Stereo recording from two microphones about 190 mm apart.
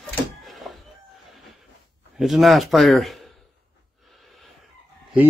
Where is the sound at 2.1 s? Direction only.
Centre (ahead or behind).